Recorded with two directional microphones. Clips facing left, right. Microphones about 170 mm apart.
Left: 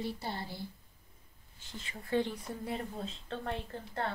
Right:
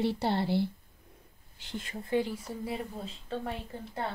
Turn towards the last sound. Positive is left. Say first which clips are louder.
# right 1 dB
turn(degrees=-10)  # may be behind; listen again after turning